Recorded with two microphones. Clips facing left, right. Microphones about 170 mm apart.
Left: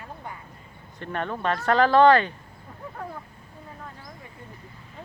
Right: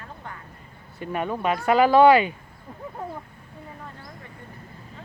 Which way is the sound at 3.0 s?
20° right (ahead or behind).